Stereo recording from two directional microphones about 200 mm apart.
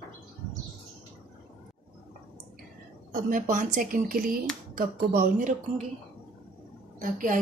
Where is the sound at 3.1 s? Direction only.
40° right (ahead or behind).